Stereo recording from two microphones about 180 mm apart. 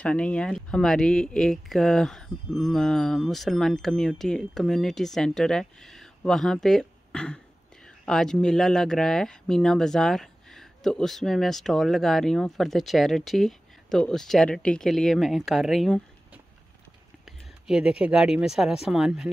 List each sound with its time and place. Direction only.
0.0 s speech: 5° left (ahead or behind)
17.6 s speech: 5° right (ahead or behind)